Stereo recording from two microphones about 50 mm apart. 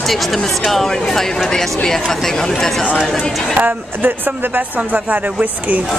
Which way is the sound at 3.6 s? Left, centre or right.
Right.